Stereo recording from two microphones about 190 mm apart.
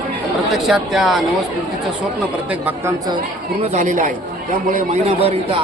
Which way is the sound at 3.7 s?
40° right (ahead or behind).